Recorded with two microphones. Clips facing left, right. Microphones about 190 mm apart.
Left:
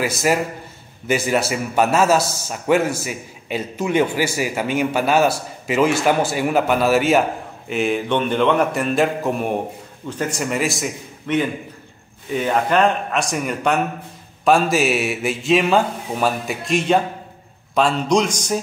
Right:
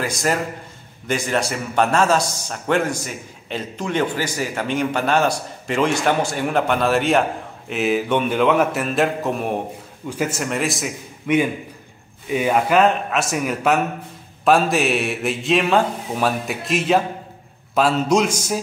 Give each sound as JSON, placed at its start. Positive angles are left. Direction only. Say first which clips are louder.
{"t": 0.0, "sound": "a man's voice", "louder": "left 3 dB", "side_deg": 5}
{"t": 11.3, "sound": "a man's voice", "louder": "right 2 dB", "side_deg": -10}